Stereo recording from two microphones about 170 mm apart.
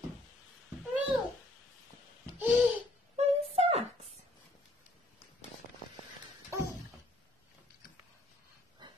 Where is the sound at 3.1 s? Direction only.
35° right (ahead or behind).